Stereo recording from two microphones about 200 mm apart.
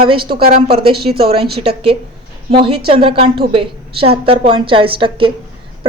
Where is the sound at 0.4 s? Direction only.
50° right (ahead or behind).